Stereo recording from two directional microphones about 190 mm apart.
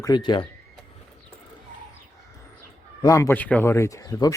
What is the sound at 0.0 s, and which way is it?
Speech, 20° left (ahead or behind).